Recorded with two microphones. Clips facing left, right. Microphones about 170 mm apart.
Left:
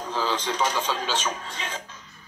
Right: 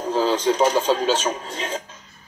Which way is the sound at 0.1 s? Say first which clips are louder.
Right 7 dB; 40° right (ahead or behind).